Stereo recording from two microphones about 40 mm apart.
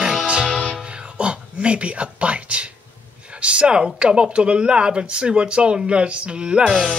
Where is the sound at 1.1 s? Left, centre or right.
Right.